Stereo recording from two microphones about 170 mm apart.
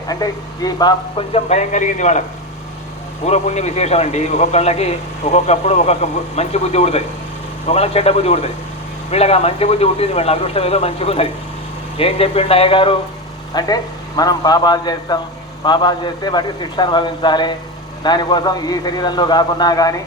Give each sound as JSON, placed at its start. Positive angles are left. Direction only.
{"t": 0.1, "sound": "a man's voice", "side_deg": 20}
{"t": 3.2, "sound": "a man's voice", "side_deg": 40}